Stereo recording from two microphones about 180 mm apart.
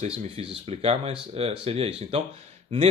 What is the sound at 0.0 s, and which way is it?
Speech, 35° right (ahead or behind).